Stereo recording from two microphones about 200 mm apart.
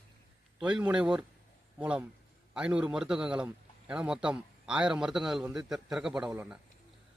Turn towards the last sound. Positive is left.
turn(degrees=-10)  # may be behind; listen again after turning